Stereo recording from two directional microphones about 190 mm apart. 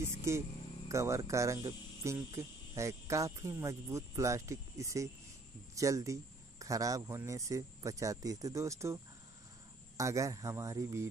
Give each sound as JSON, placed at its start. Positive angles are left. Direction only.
{"t": 0.0, "sound": "speech", "side_deg": -15}